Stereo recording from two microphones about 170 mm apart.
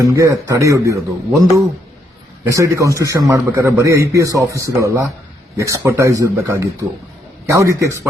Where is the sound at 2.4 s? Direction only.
20° right (ahead or behind).